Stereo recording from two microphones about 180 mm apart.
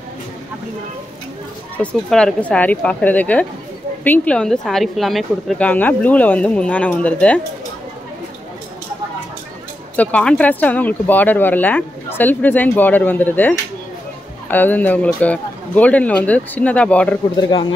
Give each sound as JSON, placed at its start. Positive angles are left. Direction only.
{"t": 1.8, "sound": "speech", "side_deg": 5}
{"t": 9.9, "sound": "speech", "side_deg": 5}
{"t": 17.5, "sound": "speech", "side_deg": 25}